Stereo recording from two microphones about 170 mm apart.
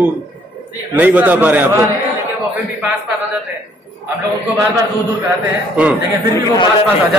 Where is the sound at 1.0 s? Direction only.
10° right (ahead or behind).